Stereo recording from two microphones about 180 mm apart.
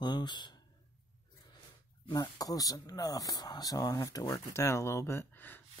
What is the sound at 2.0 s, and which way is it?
Speech, 20° left (ahead or behind).